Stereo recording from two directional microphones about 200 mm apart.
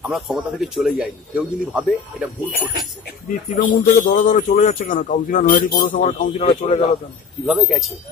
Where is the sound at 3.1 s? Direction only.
45° left (ahead or behind).